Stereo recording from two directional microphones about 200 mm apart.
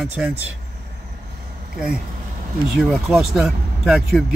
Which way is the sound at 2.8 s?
Centre (ahead or behind).